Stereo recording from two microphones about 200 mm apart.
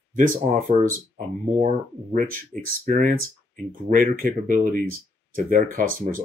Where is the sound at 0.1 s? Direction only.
45° right (ahead or behind).